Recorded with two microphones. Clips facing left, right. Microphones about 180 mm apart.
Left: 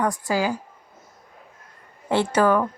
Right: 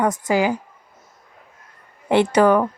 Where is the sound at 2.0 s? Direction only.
15° right (ahead or behind).